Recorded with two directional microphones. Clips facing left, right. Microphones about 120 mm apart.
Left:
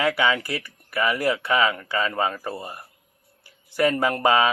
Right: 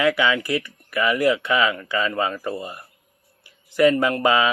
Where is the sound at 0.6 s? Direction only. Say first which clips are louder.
Right 2 dB; 35° left (ahead or behind).